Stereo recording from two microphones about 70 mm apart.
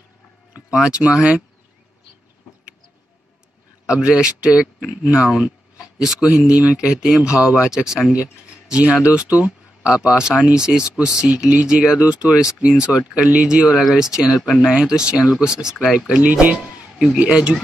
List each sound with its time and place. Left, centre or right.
0.7 s speech: centre
3.8 s speech: centre
16.1 s speech: centre